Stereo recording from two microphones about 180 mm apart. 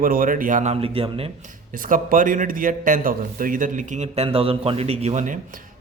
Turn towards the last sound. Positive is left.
turn(degrees=-45)  # may be behind; listen again after turning